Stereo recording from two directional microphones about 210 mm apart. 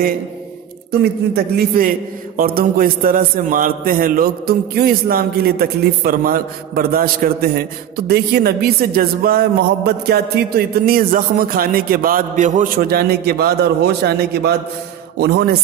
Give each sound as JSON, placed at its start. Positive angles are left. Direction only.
{"t": 1.3, "sound": "a man's voice", "side_deg": -45}
{"t": 8.1, "sound": "a man's voice", "side_deg": -50}